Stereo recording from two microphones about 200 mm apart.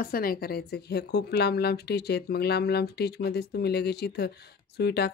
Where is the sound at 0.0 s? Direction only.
50° left (ahead or behind).